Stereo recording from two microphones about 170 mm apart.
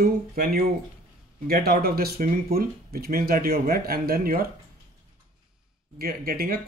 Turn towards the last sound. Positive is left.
turn(degrees=-60)  # may be behind; listen again after turning